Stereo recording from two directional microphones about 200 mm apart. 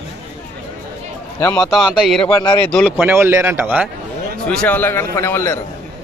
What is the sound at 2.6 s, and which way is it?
Speech, 5° left (ahead or behind).